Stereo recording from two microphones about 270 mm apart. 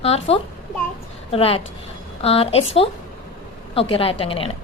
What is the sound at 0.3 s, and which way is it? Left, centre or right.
A woman's voice, left.